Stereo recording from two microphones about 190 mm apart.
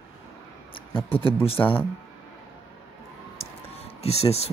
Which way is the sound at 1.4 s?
30° left (ahead or behind).